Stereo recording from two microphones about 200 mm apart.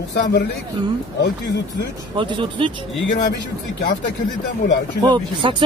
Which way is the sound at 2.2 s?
25° right (ahead or behind).